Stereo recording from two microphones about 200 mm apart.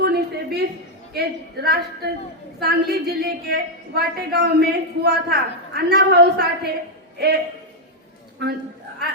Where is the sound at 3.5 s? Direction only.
50° right (ahead or behind).